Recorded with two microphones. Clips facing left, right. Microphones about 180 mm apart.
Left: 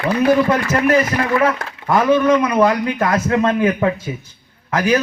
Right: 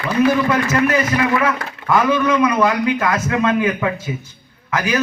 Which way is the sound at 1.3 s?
30° left (ahead or behind).